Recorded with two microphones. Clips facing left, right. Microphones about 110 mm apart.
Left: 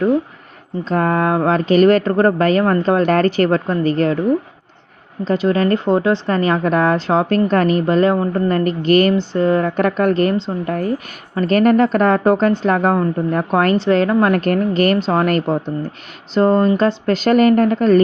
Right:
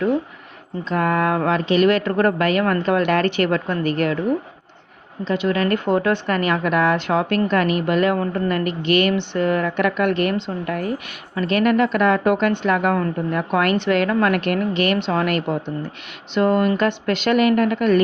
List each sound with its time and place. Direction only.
0.9 s speech: 35° left (ahead or behind)
5.2 s speech: 40° left (ahead or behind)